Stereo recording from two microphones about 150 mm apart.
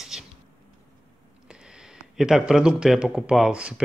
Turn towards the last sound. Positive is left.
turn(degrees=-5)  # may be behind; listen again after turning